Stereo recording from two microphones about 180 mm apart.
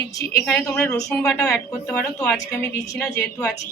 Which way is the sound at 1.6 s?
15° left (ahead or behind).